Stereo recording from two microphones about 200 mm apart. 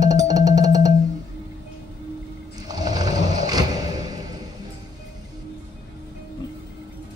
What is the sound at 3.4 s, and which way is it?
Music, 20° right (ahead or behind).